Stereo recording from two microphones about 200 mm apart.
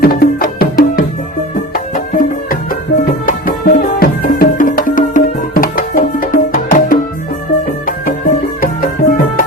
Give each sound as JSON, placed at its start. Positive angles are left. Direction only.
{"t": 0.0, "sound": "music", "side_deg": 50}
{"t": 8.6, "sound": "music", "side_deg": 45}